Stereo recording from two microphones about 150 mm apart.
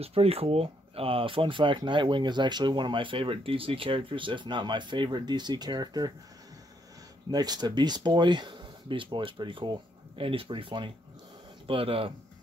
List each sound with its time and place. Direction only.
0.0 s speech: 40° right (ahead or behind)
7.2 s speech: 25° right (ahead or behind)